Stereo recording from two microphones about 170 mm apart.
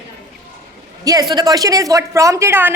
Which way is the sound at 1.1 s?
25° right (ahead or behind).